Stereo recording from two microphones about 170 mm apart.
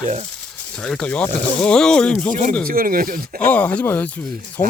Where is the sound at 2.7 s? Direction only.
55° right (ahead or behind).